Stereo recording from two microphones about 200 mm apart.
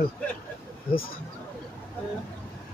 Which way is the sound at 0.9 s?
45° left (ahead or behind).